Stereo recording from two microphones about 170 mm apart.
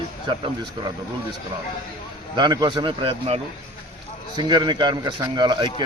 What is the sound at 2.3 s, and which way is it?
A man's voice, 25° right (ahead or behind).